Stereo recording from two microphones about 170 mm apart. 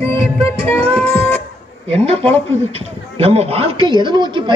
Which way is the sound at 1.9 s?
35° right (ahead or behind).